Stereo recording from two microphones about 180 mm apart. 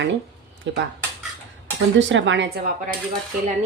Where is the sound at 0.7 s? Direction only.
90° right.